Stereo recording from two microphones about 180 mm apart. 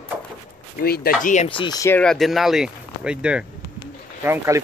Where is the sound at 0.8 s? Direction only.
55° left (ahead or behind).